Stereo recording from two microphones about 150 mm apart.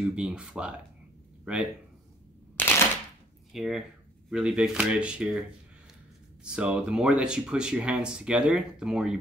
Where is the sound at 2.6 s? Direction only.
15° left (ahead or behind).